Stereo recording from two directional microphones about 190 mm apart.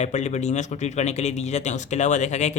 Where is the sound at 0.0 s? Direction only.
35° left (ahead or behind).